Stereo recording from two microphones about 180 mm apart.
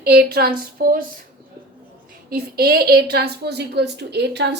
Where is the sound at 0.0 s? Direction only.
60° right (ahead or behind).